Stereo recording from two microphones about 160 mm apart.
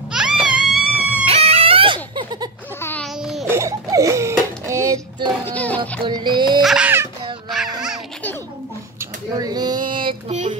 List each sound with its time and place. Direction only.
0.1 s baby cry: 5° right (ahead or behind)
1.2 s music: 35° right (ahead or behind)
2.8 s babbling: 10° left (ahead or behind)
3.4 s a sound: 15° right (ahead or behind)
5.4 s music: 10° left (ahead or behind)
5.8 s music: 30° right (ahead or behind)
6.6 s babbling: 5° right (ahead or behind)
7.5 s music: 5° right (ahead or behind)
9.3 s child singing: 25° right (ahead or behind)